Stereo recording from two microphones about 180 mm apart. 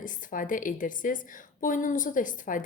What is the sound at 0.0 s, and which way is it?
A woman's voice, 50° left (ahead or behind).